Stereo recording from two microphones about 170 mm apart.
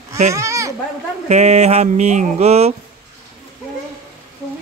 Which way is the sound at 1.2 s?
40° right (ahead or behind).